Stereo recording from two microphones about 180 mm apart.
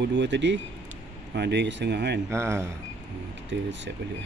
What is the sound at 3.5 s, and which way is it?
Speech, 85° right.